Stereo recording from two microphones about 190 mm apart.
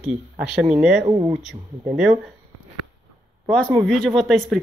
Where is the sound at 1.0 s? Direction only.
25° right (ahead or behind).